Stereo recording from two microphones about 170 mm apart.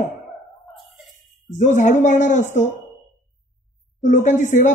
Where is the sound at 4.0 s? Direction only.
45° left (ahead or behind).